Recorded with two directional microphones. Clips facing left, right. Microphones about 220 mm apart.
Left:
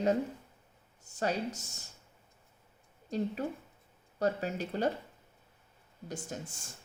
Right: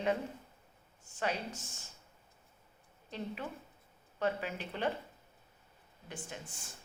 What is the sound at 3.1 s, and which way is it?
A woman's voice, 40° left (ahead or behind).